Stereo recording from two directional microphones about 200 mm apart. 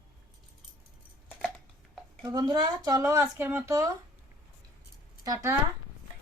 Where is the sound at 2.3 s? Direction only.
20° right (ahead or behind).